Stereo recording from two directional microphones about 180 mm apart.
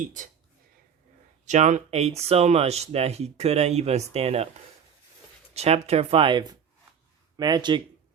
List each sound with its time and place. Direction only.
0.0 s speech: 45° right (ahead or behind)
1.5 s speech: 40° right (ahead or behind)
5.5 s speech: 35° right (ahead or behind)